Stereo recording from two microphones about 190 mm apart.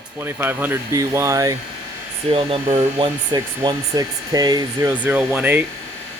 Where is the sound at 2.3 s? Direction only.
30° right (ahead or behind).